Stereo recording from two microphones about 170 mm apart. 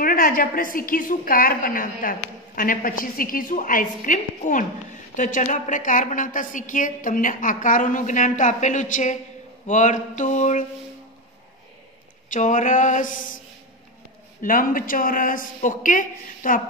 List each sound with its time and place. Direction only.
0.0 s a woman's voice: 55° left (ahead or behind)
12.3 s a woman's voice: 50° left (ahead or behind)
14.4 s a woman's voice: 50° left (ahead or behind)